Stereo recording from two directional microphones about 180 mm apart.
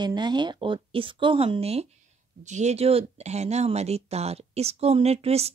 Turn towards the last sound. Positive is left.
turn(degrees=-35)  # may be behind; listen again after turning